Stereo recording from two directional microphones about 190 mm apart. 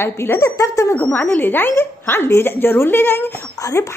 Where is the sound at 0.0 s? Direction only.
10° left (ahead or behind).